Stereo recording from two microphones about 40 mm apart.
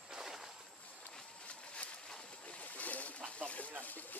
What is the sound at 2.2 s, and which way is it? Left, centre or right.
Boat, left.